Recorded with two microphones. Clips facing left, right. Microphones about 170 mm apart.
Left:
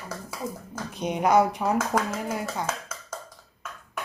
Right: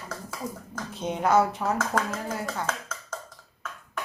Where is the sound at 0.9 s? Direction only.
15° left (ahead or behind).